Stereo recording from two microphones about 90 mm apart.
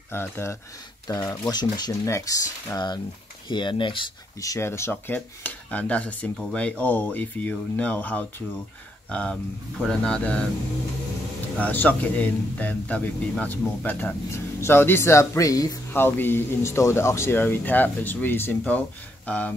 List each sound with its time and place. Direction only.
0.1 s speech: 30° left (ahead or behind)
1.0 s speech: 40° left (ahead or behind)
2.0 s speech: 35° left (ahead or behind)
3.4 s speech: 60° left (ahead or behind)
4.4 s speech: 35° left (ahead or behind)
5.1 s speech: 15° left (ahead or behind)
11.5 s speech: 20° left (ahead or behind); by 15.8 s 40° left (ahead or behind)
15.9 s speech: 25° left (ahead or behind)